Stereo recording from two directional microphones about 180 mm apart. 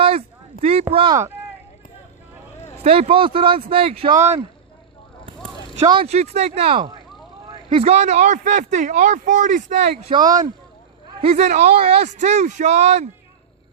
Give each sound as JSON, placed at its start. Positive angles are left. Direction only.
{"t": 0.0, "sound": "a sound", "side_deg": -35}
{"t": 0.6, "sound": "speech", "side_deg": -35}
{"t": 2.8, "sound": "speech", "side_deg": -30}
{"t": 5.8, "sound": "speech", "side_deg": -25}
{"t": 6.1, "sound": "speech", "side_deg": -35}
{"t": 10.1, "sound": "speech", "side_deg": -30}